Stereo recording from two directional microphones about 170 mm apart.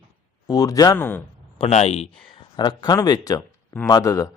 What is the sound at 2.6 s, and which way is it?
A man's voice, 25° left (ahead or behind).